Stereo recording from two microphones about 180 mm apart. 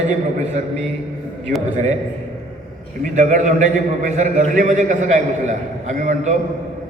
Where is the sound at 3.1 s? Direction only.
45° right (ahead or behind).